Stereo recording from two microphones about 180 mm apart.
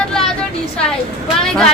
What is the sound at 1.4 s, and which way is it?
Speech, 5° left (ahead or behind).